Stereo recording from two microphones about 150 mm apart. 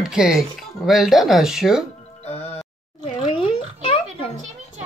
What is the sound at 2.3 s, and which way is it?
Music, 45° left (ahead or behind).